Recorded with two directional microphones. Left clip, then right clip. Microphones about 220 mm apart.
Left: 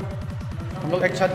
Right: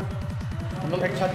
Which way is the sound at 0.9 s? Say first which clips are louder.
Left 5 dB; 20° left (ahead or behind).